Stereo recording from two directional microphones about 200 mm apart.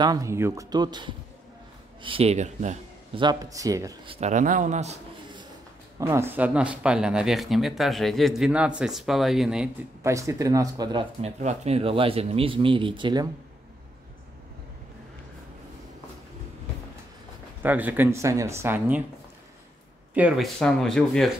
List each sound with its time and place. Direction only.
0.0 s speech: 15° right (ahead or behind); by 2.8 s 35° right (ahead or behind)
3.2 s speech: 20° right (ahead or behind)
4.1 s speech: 35° right (ahead or behind)
5.9 s speech: 15° right (ahead or behind)
10.1 s speech: 15° right (ahead or behind)
17.6 s speech: 10° right (ahead or behind)
20.2 s speech: 5° right (ahead or behind)